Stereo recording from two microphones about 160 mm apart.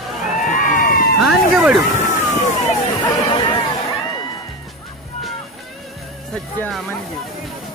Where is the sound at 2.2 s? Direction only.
45° left (ahead or behind).